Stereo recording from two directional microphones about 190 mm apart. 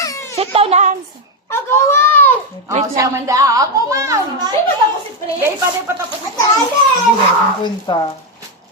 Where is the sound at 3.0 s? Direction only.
15° right (ahead or behind).